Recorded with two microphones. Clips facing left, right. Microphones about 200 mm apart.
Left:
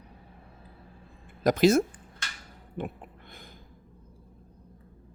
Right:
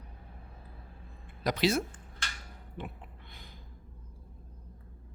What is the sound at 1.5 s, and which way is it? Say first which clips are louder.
Speech: left 8 dB; 45° left (ahead or behind).